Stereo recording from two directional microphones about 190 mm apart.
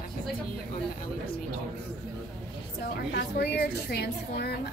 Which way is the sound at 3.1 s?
60° left (ahead or behind).